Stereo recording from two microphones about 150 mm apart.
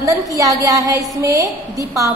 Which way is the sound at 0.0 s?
20° right (ahead or behind).